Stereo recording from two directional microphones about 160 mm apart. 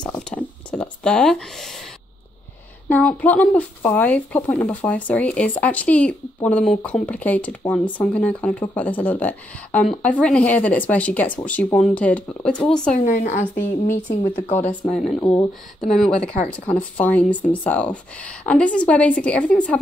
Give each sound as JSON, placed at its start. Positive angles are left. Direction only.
{"t": 0.0, "sound": "a sound", "side_deg": 10}
{"t": 2.9, "sound": "speech", "side_deg": 10}
{"t": 13.0, "sound": "speech", "side_deg": 50}
{"t": 14.9, "sound": "speech", "side_deg": 5}